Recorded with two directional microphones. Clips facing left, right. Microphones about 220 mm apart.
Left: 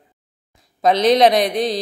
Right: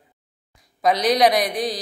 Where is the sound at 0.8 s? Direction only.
25° left (ahead or behind).